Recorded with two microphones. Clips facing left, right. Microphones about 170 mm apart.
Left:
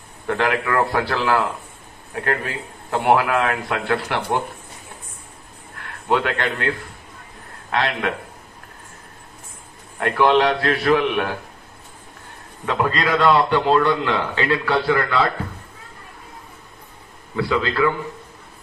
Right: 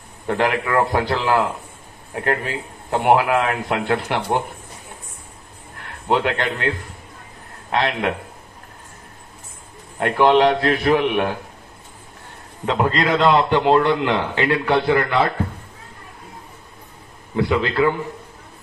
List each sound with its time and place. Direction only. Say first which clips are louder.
0.4 s a man's voice: right 1 dB; 20° right (ahead or behind)
6.0 s a man's voice: right 1 dB; 20° right (ahead or behind)
7.7 s a man's voice: right 1 dB; 20° right (ahead or behind)
9.9 s a man's voice: right 2 dB; 20° right (ahead or behind)
12.6 s a man's voice: right 2 dB; 20° right (ahead or behind)
17.4 s a man's voice: right 1 dB; 20° right (ahead or behind)